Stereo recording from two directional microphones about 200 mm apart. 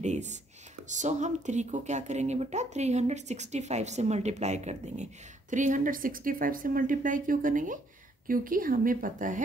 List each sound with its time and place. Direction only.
0.0 s whispering: 35° right (ahead or behind)
0.8 s speech: 35° right (ahead or behind)